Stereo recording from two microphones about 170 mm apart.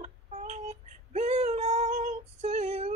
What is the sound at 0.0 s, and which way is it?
Child singing, 45° right (ahead or behind).